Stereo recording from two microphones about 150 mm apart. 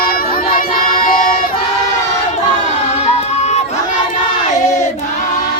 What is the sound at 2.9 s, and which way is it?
Music, 45° left (ahead or behind).